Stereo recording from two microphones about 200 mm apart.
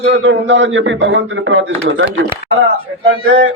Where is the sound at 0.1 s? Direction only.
65° right (ahead or behind).